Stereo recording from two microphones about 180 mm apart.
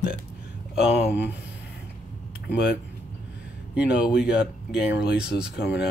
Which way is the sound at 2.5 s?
70° left (ahead or behind).